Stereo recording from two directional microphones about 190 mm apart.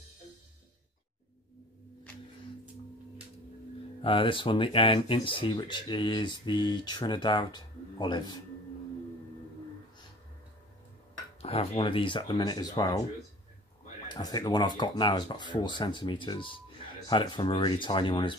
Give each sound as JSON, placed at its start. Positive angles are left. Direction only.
{"t": 4.0, "sound": "speech", "side_deg": 25}
{"t": 11.4, "sound": "speech", "side_deg": 30}
{"t": 14.0, "sound": "speech", "side_deg": 20}